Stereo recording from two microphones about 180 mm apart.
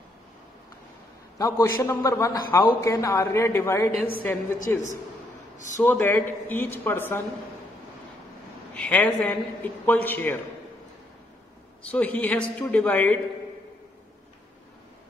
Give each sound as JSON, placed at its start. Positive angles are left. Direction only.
{"t": 1.4, "sound": "a man's voice", "side_deg": 15}
{"t": 8.7, "sound": "a man's voice", "side_deg": 10}
{"t": 11.9, "sound": "a man's voice", "side_deg": 10}